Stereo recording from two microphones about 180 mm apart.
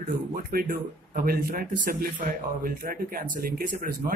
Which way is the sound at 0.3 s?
55° right (ahead or behind).